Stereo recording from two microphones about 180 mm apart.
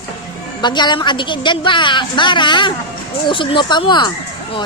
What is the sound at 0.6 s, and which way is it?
A woman's voice, 25° left (ahead or behind).